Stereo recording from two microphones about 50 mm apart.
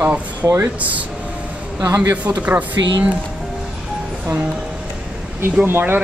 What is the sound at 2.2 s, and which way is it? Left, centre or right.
Speech, right.